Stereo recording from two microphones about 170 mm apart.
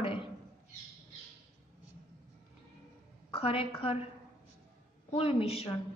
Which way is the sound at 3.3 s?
35° left (ahead or behind).